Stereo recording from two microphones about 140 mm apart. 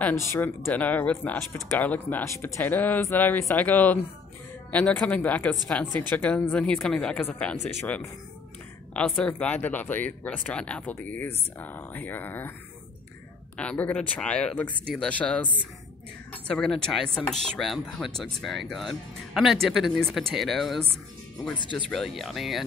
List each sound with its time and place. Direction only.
0.3 s speech: 15° left (ahead or behind)
7.5 s speech: 15° left (ahead or behind)
13.6 s speech: 10° left (ahead or behind)
16.4 s speech: 5° left (ahead or behind)
21.8 s speech: centre (ahead or behind)